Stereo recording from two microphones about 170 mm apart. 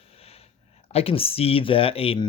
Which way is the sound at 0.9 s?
35° left (ahead or behind).